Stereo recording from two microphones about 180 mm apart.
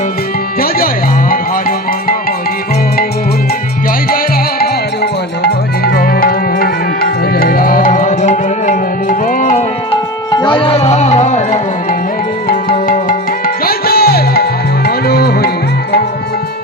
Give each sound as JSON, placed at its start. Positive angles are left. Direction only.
{"t": 1.3, "sound": "music", "side_deg": 50}
{"t": 5.4, "sound": "music", "side_deg": 60}
{"t": 10.3, "sound": "music", "side_deg": 25}